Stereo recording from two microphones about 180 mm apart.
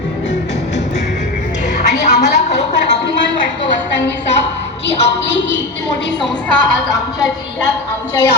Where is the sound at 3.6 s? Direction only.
80° left.